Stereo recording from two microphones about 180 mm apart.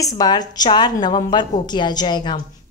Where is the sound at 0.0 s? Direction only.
20° left (ahead or behind).